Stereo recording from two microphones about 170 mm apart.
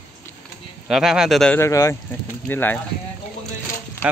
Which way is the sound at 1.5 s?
15° left (ahead or behind).